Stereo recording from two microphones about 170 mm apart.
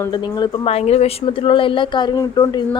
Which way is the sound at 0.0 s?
25° left (ahead or behind).